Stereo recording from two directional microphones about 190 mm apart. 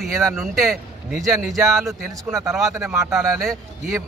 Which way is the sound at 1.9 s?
15° right (ahead or behind).